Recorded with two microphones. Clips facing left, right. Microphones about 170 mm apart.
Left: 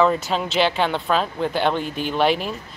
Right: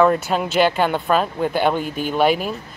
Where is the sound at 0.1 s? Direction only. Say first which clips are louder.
Right 3 dB; 5° right (ahead or behind).